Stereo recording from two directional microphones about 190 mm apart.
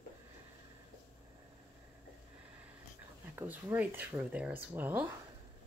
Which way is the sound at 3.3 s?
10° right (ahead or behind).